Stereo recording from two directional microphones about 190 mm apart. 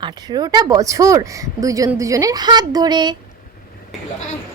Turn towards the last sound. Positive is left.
turn(degrees=-25)  # may be behind; listen again after turning